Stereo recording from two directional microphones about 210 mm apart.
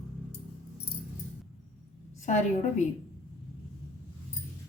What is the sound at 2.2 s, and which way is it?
Speech, 35° left (ahead or behind).